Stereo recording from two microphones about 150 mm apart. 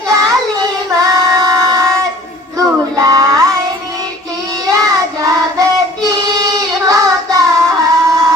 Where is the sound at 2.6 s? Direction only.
25° right (ahead or behind).